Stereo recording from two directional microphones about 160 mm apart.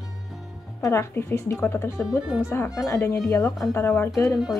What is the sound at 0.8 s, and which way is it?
Speech, 15° left (ahead or behind).